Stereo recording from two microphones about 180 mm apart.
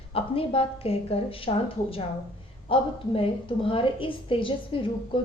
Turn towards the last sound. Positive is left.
turn(degrees=30)  # may be behind; listen again after turning